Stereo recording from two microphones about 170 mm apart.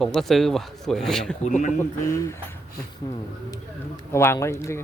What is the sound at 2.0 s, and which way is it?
Speech, 15° left (ahead or behind).